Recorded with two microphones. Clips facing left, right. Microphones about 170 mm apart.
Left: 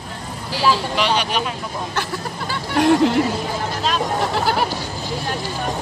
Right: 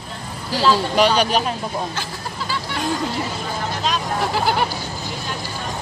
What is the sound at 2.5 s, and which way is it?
Speech, 70° left (ahead or behind).